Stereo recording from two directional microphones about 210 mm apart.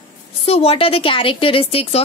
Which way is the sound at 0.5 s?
25° left (ahead or behind).